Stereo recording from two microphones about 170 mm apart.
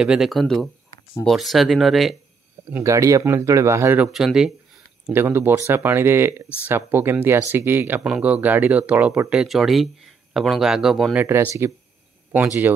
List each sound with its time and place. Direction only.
0.0 s speech: 5° right (ahead or behind)
2.7 s speech: 15° right (ahead or behind)
5.0 s speech: 15° right (ahead or behind)
11.2 s speech: 15° right (ahead or behind)